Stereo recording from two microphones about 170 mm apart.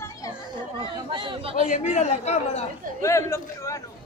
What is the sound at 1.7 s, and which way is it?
Speech, 45° left (ahead or behind).